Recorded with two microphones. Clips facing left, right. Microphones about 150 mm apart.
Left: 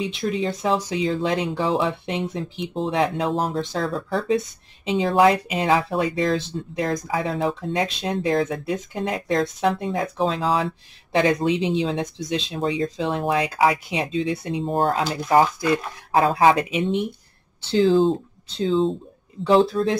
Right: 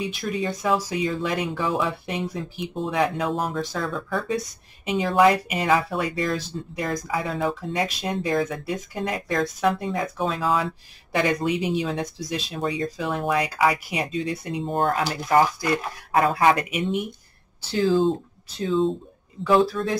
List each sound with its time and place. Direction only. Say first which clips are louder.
0.1 s speech: left 3 dB; 25° left (ahead or behind)
9.8 s speech: left 2 dB; 5° left (ahead or behind)
10.1 s speech: left 2 dB; 25° left (ahead or behind)
16.1 s speech: left 2 dB; 30° left (ahead or behind)